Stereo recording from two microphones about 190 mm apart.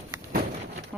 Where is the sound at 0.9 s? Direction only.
10° right (ahead or behind).